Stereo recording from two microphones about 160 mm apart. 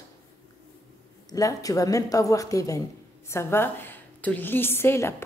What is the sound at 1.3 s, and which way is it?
A woman's voice, 20° left (ahead or behind).